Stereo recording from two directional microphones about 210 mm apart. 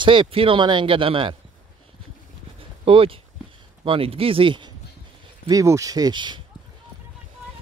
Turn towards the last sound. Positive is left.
turn(degrees=-20)  # may be behind; listen again after turning